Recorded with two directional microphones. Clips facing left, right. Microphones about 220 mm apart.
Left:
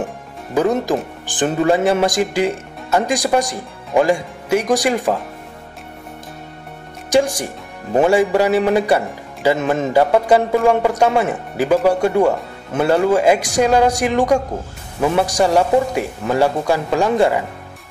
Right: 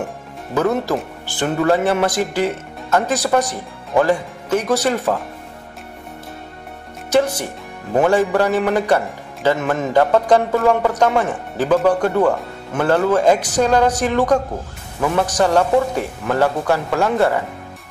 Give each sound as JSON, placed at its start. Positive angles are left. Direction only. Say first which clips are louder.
{"t": 0.6, "sound": "speech", "louder": "left 2 dB", "side_deg": 15}
{"t": 7.1, "sound": "speech", "louder": "left 1 dB", "side_deg": 15}
{"t": 9.6, "sound": "a man's voice", "louder": "left 2 dB", "side_deg": 20}
{"t": 9.9, "sound": "speech", "louder": "even", "side_deg": 10}